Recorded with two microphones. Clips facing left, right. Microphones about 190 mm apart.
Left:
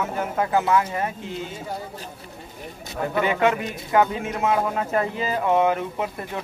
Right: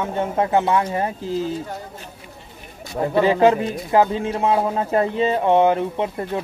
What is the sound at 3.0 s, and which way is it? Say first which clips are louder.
Speech: right 6 dB; 30° right (ahead or behind).